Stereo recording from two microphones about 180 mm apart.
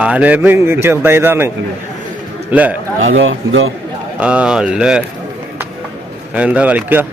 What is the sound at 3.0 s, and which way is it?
Speech, 90° right.